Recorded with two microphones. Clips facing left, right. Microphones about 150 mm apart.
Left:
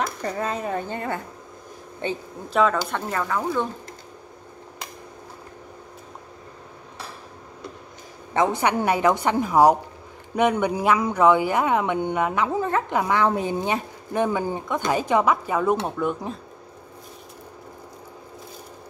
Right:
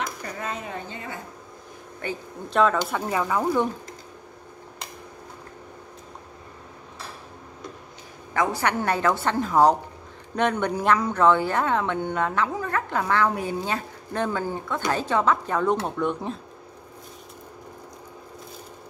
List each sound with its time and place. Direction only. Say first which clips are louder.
0.2 s speech: left 6 dB; 35° left (ahead or behind)
0.8 s a woman's voice: left 7 dB; 55° left (ahead or behind)
2.0 s speech: left 4 dB; 25° left (ahead or behind)
2.5 s speech: even; centre (ahead or behind)
8.3 s speech: left 3 dB; 20° left (ahead or behind)
12.4 s speech: left 4 dB; 25° left (ahead or behind); by 16.3 s centre (ahead or behind)